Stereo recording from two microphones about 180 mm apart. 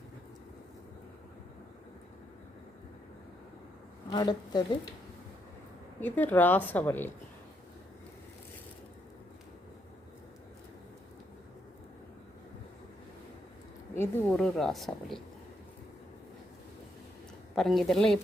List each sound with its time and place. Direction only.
4.1 s speech: 25° left (ahead or behind)
6.0 s speech: 10° left (ahead or behind)
13.9 s speech: 15° left (ahead or behind)
17.5 s speech: centre (ahead or behind)